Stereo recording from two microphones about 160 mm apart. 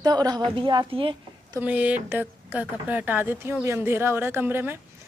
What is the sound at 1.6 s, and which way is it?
A woman's voice, 10° right (ahead or behind).